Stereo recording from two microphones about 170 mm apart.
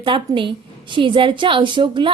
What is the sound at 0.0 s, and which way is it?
A woman's voice, 30° right (ahead or behind).